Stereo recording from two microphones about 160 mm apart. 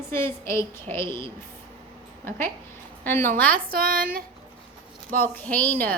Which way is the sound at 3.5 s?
65° right (ahead or behind).